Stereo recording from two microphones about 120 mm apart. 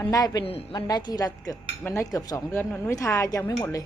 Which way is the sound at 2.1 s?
30° left (ahead or behind).